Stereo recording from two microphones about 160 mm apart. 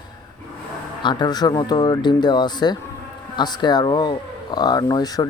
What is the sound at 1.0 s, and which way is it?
Speech, 25° left (ahead or behind).